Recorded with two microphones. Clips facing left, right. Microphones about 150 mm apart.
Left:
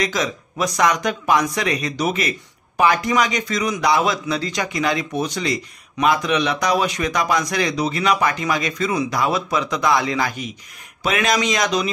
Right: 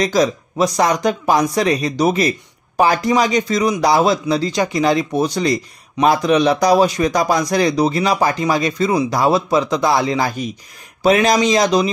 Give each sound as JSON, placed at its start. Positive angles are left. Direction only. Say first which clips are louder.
{"t": 0.0, "sound": "speech", "louder": "right 7 dB", "side_deg": -35}